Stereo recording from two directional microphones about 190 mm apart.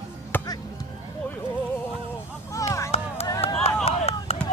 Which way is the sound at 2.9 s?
30° left (ahead or behind).